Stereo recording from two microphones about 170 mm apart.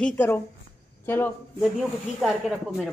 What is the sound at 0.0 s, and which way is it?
Speech, 10° left (ahead or behind).